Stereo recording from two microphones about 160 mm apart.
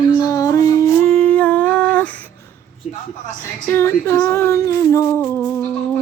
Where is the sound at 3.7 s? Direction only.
15° left (ahead or behind).